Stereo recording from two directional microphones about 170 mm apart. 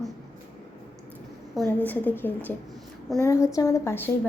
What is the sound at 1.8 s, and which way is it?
A woman's voice, 10° left (ahead or behind).